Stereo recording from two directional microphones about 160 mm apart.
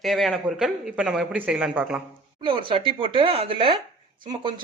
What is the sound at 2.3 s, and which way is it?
Speech, 30° right (ahead or behind).